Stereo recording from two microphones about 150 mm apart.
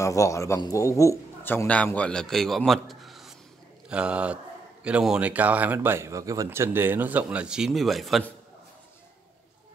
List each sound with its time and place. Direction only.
0.0 s speech: 20° left (ahead or behind); by 8.2 s centre (ahead or behind)